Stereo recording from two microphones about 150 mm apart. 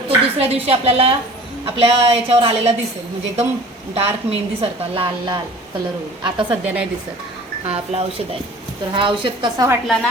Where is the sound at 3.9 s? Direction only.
40° right (ahead or behind).